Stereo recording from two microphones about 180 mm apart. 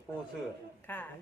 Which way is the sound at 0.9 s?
10° left (ahead or behind).